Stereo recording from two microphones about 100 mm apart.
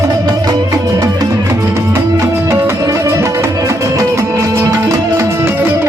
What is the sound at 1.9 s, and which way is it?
Music, 30° right (ahead or behind).